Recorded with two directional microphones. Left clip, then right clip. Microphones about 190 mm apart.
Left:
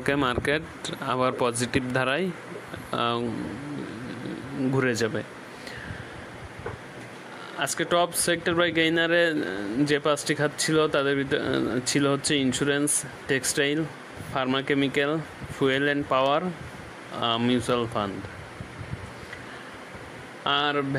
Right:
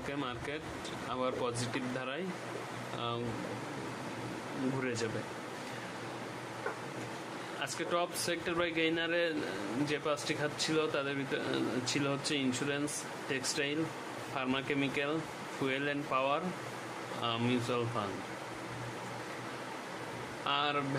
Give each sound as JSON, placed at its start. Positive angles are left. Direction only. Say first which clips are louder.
{"t": 0.1, "sound": "speech", "louder": "left 16 dB", "side_deg": 45}
{"t": 4.7, "sound": "speech", "louder": "left 15 dB", "side_deg": 45}
{"t": 7.6, "sound": "speech", "louder": "left 11 dB", "side_deg": 45}
{"t": 20.4, "sound": "speech", "louder": "left 8 dB", "side_deg": 40}